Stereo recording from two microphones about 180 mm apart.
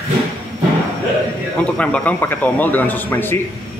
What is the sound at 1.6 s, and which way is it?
A man's voice, 5° left (ahead or behind).